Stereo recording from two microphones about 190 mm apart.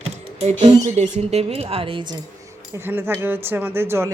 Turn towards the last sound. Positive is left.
turn(degrees=-10)  # may be behind; listen again after turning